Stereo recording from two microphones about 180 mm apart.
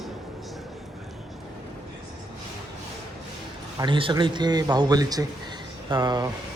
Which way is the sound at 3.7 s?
25° right (ahead or behind).